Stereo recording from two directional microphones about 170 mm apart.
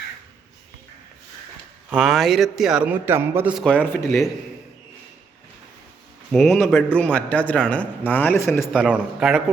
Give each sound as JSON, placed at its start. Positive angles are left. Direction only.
{"t": 1.9, "sound": "a man's voice", "side_deg": 0}
{"t": 3.6, "sound": "a man's voice", "side_deg": 5}
{"t": 6.3, "sound": "a man's voice", "side_deg": 0}
{"t": 8.7, "sound": "a man's voice", "side_deg": -5}